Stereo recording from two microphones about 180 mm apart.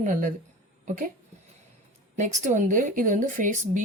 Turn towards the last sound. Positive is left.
turn(degrees=-45)  # may be behind; listen again after turning